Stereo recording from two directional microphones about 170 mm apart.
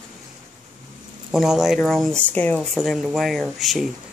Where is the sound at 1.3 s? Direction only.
5° right (ahead or behind).